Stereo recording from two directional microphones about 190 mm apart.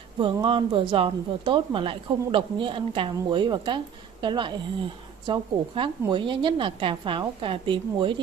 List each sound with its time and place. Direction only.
0.2 s speech: 25° right (ahead or behind)